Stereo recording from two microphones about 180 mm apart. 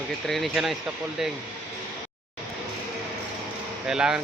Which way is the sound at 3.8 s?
5° right (ahead or behind).